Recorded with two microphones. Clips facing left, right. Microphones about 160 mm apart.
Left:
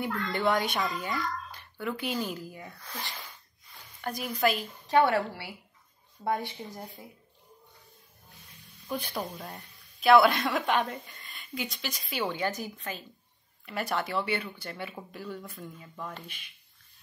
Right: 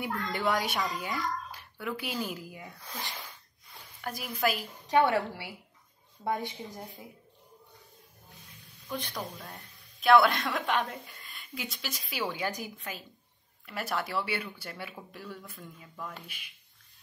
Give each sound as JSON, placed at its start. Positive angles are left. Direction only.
{"t": 0.3, "sound": "a woman's voice", "side_deg": -5}
{"t": 4.0, "sound": "a woman's voice", "side_deg": 0}
{"t": 4.6, "sound": "speech", "side_deg": -20}
{"t": 8.8, "sound": "a woman's voice", "side_deg": 10}